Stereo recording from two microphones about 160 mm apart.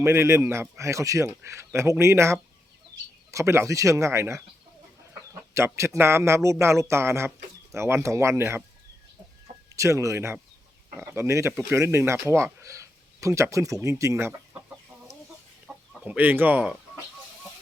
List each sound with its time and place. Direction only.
0.0 s speech: 15° right (ahead or behind)
9.6 s speech: 20° right (ahead or behind)
15.6 s chicken: 5° right (ahead or behind)